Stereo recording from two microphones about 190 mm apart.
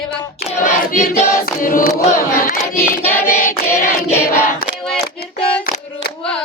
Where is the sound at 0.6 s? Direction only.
40° left (ahead or behind).